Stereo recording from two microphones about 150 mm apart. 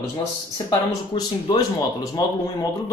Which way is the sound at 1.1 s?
35° left (ahead or behind).